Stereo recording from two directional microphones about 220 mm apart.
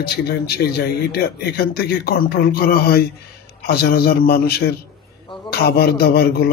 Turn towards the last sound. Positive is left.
turn(degrees=45)  # may be behind; listen again after turning